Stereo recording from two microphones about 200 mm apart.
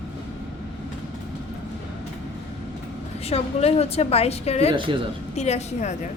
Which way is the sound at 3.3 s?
30° left (ahead or behind).